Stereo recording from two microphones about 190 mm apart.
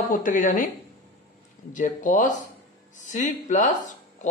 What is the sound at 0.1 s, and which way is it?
Speech, 45° left (ahead or behind).